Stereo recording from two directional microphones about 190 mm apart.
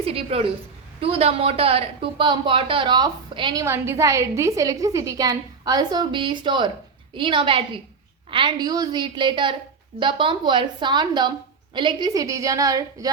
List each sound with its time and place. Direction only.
0.0 s a woman's voice: 30° right (ahead or behind)